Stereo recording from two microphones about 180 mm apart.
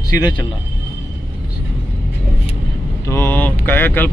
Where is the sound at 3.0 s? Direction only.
15° left (ahead or behind).